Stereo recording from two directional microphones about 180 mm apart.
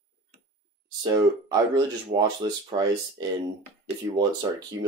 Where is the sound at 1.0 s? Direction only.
20° right (ahead or behind).